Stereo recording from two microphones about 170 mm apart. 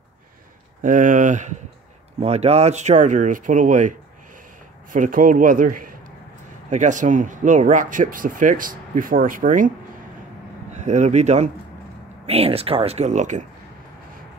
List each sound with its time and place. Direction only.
0.8 s speech: 50° right (ahead or behind)
4.9 s a man's voice: 55° right (ahead or behind)
10.7 s speech: 45° right (ahead or behind)